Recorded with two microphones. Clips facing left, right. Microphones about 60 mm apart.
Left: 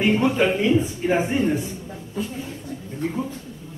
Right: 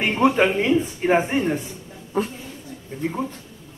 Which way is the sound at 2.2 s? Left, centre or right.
Right.